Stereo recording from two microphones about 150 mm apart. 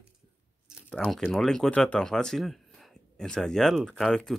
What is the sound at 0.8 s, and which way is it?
Speech, 5° left (ahead or behind).